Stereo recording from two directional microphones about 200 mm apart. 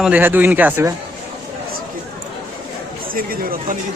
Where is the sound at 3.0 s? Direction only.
45° right (ahead or behind).